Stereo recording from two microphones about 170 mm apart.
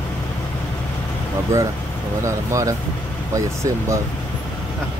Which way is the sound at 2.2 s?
20° right (ahead or behind).